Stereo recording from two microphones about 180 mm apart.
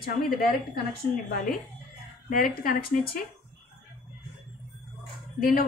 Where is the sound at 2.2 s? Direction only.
50° left (ahead or behind).